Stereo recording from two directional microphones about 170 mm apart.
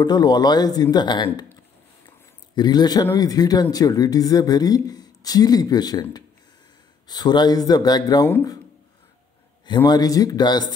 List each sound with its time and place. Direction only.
0.0 s a man's voice: 25° left (ahead or behind)
9.8 s speech: 20° left (ahead or behind)